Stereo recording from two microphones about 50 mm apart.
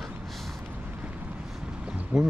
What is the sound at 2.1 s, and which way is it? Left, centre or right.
Speech, right.